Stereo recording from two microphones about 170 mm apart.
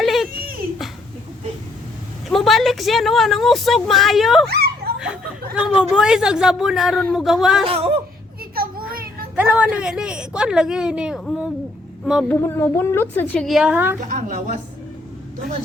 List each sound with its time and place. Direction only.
0.0 s dog: centre (ahead or behind)
0.3 s dog: 60° right (ahead or behind)
2.3 s speech: centre (ahead or behind)
4.5 s a sound: 70° right (ahead or behind)
5.5 s speech: 5° right (ahead or behind)
7.7 s speech: 35° right (ahead or behind)
8.5 s children playing: 60° right (ahead or behind)
9.3 s speech: 10° right (ahead or behind)
12.3 s a woman's voice: 15° left (ahead or behind); by 13.9 s 10° right (ahead or behind)
14.0 s a woman's voice: 45° right (ahead or behind)